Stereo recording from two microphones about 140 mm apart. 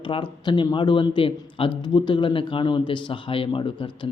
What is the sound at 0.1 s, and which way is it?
A man's voice, 35° left (ahead or behind).